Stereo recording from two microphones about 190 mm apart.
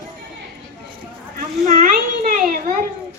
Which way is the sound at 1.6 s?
40° right (ahead or behind).